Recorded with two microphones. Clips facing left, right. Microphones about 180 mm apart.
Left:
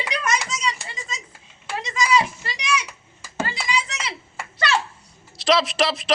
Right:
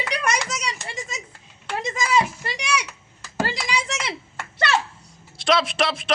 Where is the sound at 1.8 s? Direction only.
50° right (ahead or behind).